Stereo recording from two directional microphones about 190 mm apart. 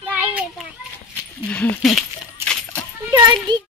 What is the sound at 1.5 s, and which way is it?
Speech, 5° left (ahead or behind).